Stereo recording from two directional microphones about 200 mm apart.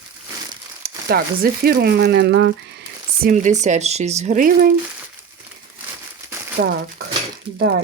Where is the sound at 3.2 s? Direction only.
40° right (ahead or behind).